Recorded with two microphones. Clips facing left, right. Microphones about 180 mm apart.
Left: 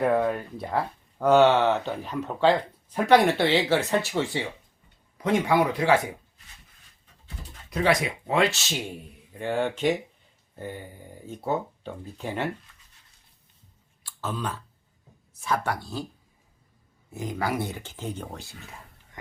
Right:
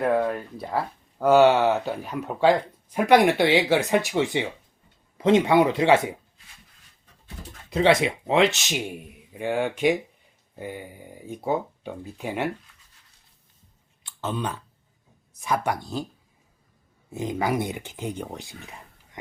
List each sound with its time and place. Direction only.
0.0 s speech: centre (ahead or behind); by 6.1 s 25° right (ahead or behind)
7.7 s speech: 25° right (ahead or behind)
14.0 s clicking: 20° right (ahead or behind)
15.3 s speech: 15° right (ahead or behind)
17.1 s speech: 20° right (ahead or behind)